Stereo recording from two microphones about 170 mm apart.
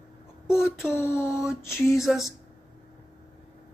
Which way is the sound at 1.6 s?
15° left (ahead or behind).